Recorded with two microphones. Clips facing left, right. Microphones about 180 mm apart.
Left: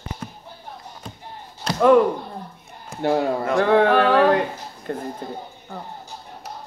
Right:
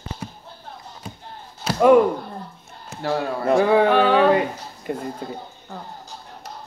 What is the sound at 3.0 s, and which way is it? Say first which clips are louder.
Speech: left 4 dB; 20° left (ahead or behind).